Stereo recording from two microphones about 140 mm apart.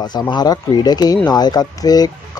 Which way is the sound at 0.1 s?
30° left (ahead or behind).